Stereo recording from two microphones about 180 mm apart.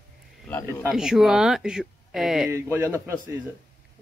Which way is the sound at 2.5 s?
15° right (ahead or behind).